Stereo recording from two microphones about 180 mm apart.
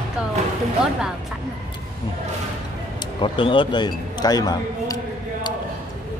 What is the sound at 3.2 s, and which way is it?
Speech, 30° left (ahead or behind).